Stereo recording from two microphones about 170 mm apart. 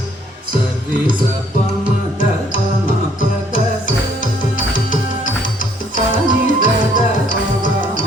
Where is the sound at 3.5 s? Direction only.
50° left (ahead or behind).